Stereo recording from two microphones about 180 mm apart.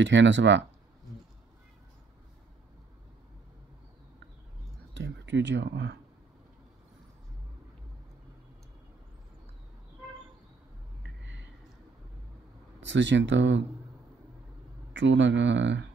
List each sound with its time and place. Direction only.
0.0 s speech: 85° right
4.9 s speech: 80° right
11.2 s a sound: 90° right
12.8 s speech: 80° right
14.9 s speech: 85° right